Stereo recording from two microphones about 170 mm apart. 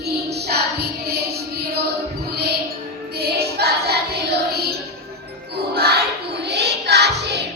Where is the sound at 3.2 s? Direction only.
65° right (ahead or behind).